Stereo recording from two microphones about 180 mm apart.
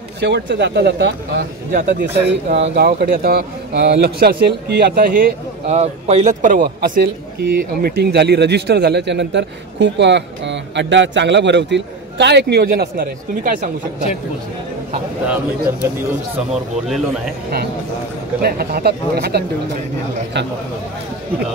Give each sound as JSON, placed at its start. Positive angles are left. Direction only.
{"t": 0.2, "sound": "a man's voice", "side_deg": -75}
{"t": 2.1, "sound": "a man's voice", "side_deg": -65}
{"t": 5.8, "sound": "a man's voice", "side_deg": -35}
{"t": 15.2, "sound": "speech", "side_deg": -10}
{"t": 18.4, "sound": "a man's voice", "side_deg": -60}
{"t": 20.4, "sound": "a man's voice", "side_deg": -75}